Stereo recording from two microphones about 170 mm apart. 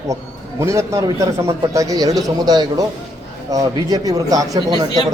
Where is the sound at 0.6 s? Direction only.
15° right (ahead or behind).